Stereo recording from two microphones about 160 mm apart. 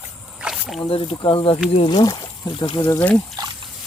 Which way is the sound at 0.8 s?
35° left (ahead or behind).